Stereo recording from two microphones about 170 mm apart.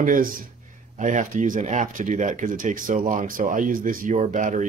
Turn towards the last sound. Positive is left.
turn(degrees=-45)  # may be behind; listen again after turning